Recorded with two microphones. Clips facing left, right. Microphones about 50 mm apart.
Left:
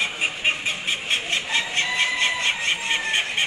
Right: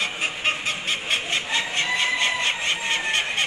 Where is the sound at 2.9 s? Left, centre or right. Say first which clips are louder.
Even; centre.